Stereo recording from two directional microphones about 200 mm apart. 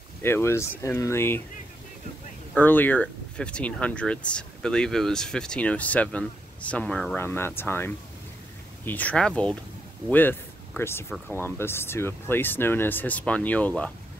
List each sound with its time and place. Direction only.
0.2 s speech: 10° left (ahead or behind)
2.5 s speech: 10° left (ahead or behind)